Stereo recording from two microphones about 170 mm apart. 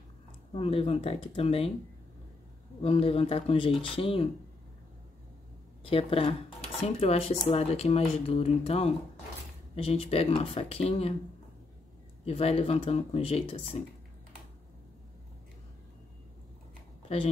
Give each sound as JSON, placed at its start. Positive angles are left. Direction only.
{"t": 0.5, "sound": "speech", "side_deg": 35}
{"t": 2.8, "sound": "speech", "side_deg": 35}
{"t": 5.9, "sound": "speech", "side_deg": 35}
{"t": 12.3, "sound": "speech", "side_deg": 35}